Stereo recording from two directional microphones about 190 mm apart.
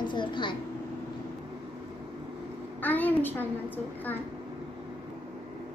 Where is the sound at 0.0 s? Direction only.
25° left (ahead or behind).